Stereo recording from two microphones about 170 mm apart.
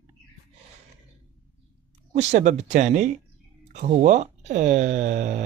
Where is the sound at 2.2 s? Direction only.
45° right (ahead or behind).